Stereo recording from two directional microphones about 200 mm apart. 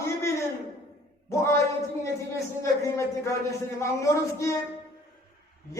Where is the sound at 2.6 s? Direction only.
15° left (ahead or behind).